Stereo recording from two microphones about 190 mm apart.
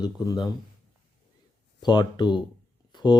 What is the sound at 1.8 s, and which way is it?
Speech, 20° left (ahead or behind).